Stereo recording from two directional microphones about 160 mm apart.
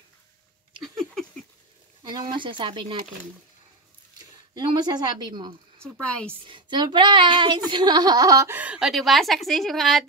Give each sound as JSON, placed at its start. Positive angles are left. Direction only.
{"t": 0.8, "sound": "a sound", "side_deg": 0}
{"t": 2.3, "sound": "speech", "side_deg": -30}
{"t": 4.6, "sound": "a woman's voice", "side_deg": -25}
{"t": 6.0, "sound": "a woman's voice", "side_deg": 5}
{"t": 6.4, "sound": "a woman's voice", "side_deg": -30}
{"t": 8.5, "sound": "speech", "side_deg": -5}